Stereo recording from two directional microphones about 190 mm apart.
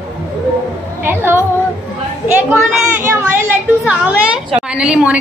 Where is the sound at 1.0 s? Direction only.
10° right (ahead or behind).